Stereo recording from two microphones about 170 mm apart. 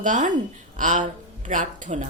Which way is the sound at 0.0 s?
50° right (ahead or behind).